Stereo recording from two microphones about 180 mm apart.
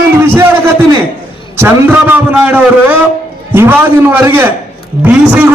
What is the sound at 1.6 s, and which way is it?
A man's voice, 10° right (ahead or behind).